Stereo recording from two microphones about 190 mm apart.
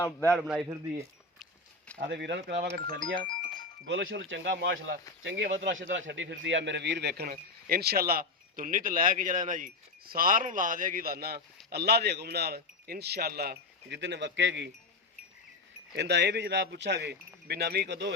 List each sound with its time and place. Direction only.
0.0 s a man's voice: 10° left (ahead or behind)
2.0 s speech: 65° right (ahead or behind)
3.2 s music: 25° left (ahead or behind)
3.8 s a man's voice: 70° right (ahead or behind)
16.0 s speech: 65° right (ahead or behind)